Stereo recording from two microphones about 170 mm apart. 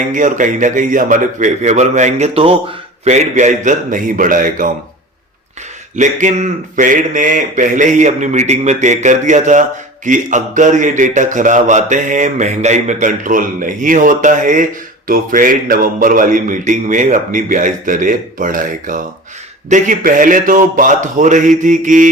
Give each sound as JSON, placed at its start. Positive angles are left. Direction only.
{"t": 0.1, "sound": "a man's voice", "side_deg": -50}
{"t": 6.0, "sound": "a man's voice", "side_deg": -45}